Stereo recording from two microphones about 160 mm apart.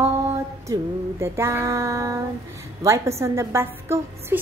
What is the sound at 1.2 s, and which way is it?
A woman's voice, 15° right (ahead or behind).